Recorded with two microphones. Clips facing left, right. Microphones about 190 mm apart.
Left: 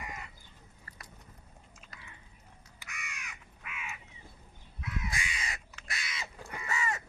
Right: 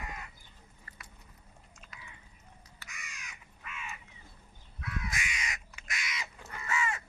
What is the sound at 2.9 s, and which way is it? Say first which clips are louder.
Crow: left 4 dB; 65° left (ahead or behind).